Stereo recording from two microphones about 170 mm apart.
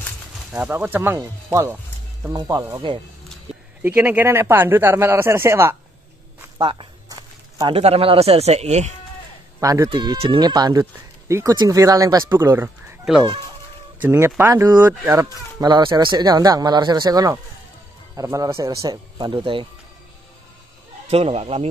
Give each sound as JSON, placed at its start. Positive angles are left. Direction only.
{"t": 0.5, "sound": "speech", "side_deg": -5}
{"t": 3.8, "sound": "speech", "side_deg": -10}
{"t": 6.6, "sound": "a sound", "side_deg": -30}
{"t": 7.7, "sound": "speech", "side_deg": -35}
{"t": 9.6, "sound": "speech", "side_deg": -20}
{"t": 21.1, "sound": "speech", "side_deg": -35}